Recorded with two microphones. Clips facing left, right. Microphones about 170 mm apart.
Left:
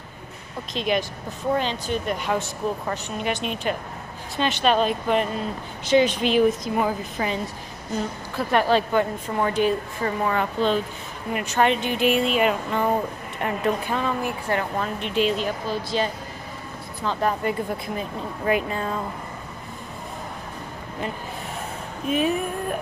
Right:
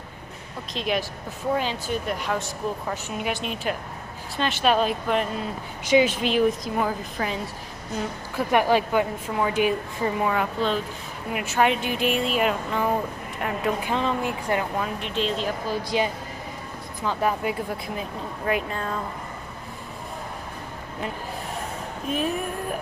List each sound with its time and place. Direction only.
0.7 s speech: centre (ahead or behind)
8.4 s a woman's voice: 15° right (ahead or behind)
13.8 s speech: 20° right (ahead or behind)
14.8 s speech: centre (ahead or behind)
15.7 s a woman's voice: 15° right (ahead or behind); by 18.9 s 5° left (ahead or behind)
22.1 s speech: centre (ahead or behind)